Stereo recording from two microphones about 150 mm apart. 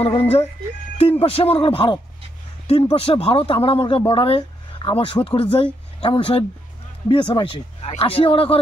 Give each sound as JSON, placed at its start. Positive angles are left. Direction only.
{"t": 0.0, "sound": "speech", "side_deg": 40}